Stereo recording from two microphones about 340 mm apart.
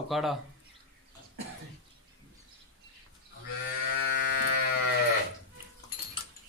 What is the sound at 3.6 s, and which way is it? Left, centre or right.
Livestock, left.